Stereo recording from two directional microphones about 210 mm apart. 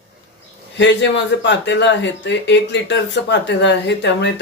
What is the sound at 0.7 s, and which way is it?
Speech, 60° left (ahead or behind).